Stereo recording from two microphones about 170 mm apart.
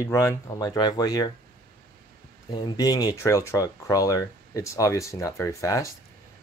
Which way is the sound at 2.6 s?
25° left (ahead or behind).